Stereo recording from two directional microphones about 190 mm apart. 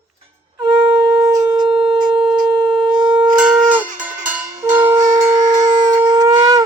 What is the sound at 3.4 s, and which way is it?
Music, 5° right (ahead or behind).